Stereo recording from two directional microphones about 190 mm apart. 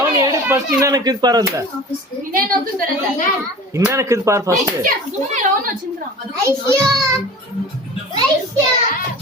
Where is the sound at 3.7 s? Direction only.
15° right (ahead or behind).